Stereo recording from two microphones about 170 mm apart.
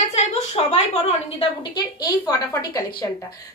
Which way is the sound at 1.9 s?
20° left (ahead or behind).